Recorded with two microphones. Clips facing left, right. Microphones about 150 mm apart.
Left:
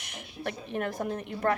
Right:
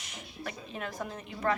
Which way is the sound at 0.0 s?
65° left (ahead or behind).